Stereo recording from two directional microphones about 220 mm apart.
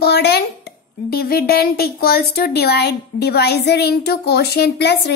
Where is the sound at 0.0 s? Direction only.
45° left (ahead or behind).